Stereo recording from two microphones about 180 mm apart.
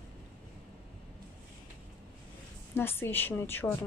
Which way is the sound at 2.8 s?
10° left (ahead or behind).